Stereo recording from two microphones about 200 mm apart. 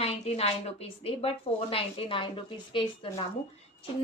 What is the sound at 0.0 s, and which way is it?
A woman's voice, 30° left (ahead or behind).